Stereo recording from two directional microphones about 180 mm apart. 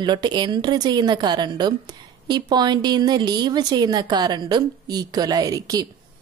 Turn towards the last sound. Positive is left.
turn(degrees=-20)  # may be behind; listen again after turning